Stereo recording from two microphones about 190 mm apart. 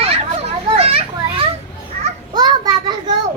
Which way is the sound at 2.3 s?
20° right (ahead or behind).